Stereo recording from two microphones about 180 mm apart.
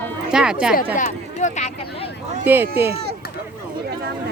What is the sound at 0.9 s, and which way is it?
Speech, 45° left (ahead or behind).